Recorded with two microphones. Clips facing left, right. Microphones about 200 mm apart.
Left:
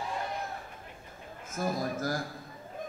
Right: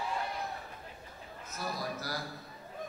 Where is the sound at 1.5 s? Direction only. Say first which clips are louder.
Left 7 dB; 50° left (ahead or behind).